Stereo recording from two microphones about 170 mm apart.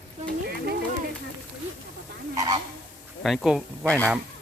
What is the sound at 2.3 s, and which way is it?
Goose, 20° right (ahead or behind).